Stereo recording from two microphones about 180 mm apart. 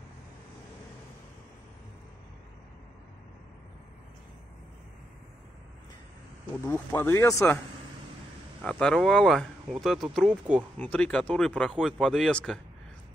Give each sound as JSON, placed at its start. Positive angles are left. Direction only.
{"t": 6.6, "sound": "speech", "side_deg": 15}
{"t": 8.6, "sound": "speech", "side_deg": 5}